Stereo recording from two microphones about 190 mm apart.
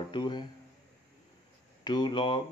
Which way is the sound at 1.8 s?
25° left (ahead or behind).